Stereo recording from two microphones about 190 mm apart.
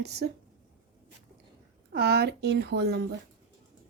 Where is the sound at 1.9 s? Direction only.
55° right (ahead or behind).